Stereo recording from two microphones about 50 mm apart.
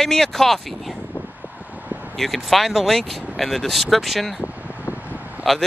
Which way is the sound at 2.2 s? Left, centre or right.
Centre.